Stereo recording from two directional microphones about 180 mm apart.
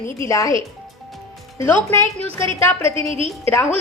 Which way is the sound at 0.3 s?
20° left (ahead or behind).